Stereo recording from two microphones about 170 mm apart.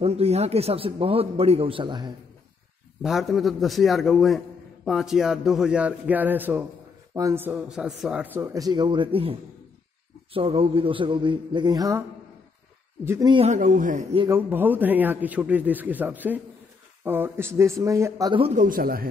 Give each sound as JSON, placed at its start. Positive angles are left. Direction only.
{"t": 0.0, "sound": "a man's voice", "side_deg": -35}
{"t": 3.0, "sound": "a man's voice", "side_deg": 0}
{"t": 13.0, "sound": "a man's voice", "side_deg": -15}
{"t": 13.5, "sound": "a man's voice", "side_deg": -50}
{"t": 14.3, "sound": "a man's voice", "side_deg": -10}
{"t": 18.4, "sound": "a man's voice", "side_deg": -45}